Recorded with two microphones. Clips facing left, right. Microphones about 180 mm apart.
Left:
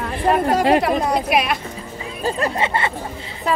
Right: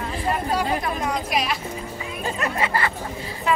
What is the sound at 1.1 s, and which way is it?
Speech, 65° left (ahead or behind).